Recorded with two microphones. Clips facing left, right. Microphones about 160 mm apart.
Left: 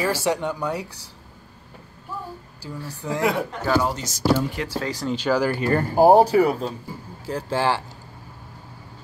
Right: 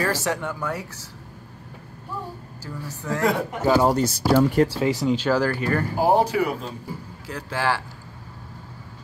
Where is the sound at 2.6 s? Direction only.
15° left (ahead or behind).